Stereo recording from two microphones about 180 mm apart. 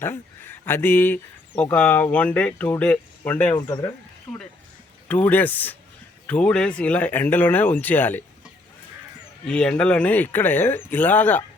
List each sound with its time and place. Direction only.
0.0 s speech: 10° left (ahead or behind)
3.5 s speech: 20° left (ahead or behind)
4.3 s speech: 10° left (ahead or behind)
9.5 s speech: 5° left (ahead or behind)